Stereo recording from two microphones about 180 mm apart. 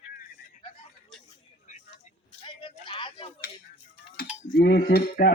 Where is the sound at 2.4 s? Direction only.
25° left (ahead or behind).